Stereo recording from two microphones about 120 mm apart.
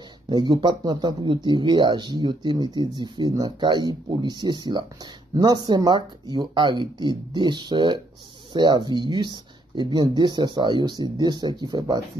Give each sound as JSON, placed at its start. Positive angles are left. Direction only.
{"t": 0.3, "sound": "speech", "side_deg": -35}